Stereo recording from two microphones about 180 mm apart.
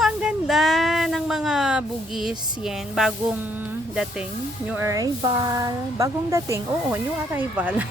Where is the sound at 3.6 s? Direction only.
5° right (ahead or behind).